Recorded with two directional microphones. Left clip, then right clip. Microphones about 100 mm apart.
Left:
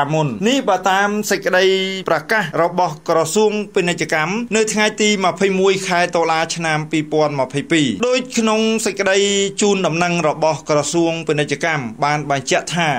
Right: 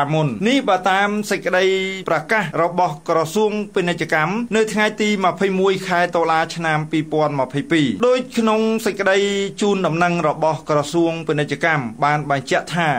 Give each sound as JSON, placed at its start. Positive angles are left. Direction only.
{"t": 0.0, "sound": "speech", "side_deg": 20}
{"t": 1.3, "sound": "speech", "side_deg": 30}